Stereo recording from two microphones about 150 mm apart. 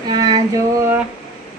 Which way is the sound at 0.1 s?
25° right (ahead or behind).